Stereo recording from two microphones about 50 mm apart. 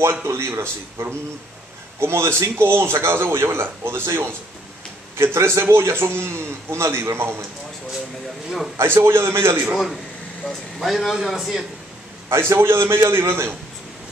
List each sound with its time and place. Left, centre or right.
0.3 s a man's voice: right
8.7 s a man's voice: right
10.8 s a man's voice: centre
12.3 s a man's voice: right